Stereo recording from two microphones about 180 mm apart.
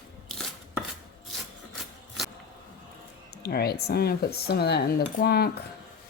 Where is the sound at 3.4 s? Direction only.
60° left (ahead or behind).